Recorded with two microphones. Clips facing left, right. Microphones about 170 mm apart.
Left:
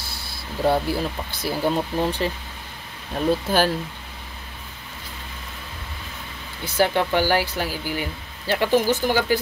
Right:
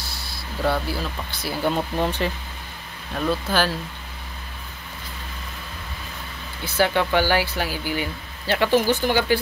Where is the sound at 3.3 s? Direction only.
45° left (ahead or behind).